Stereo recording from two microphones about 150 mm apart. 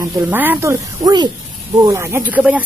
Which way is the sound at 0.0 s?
10° right (ahead or behind).